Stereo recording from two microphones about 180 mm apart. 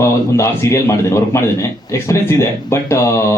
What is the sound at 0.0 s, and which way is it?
A man's voice, 15° left (ahead or behind).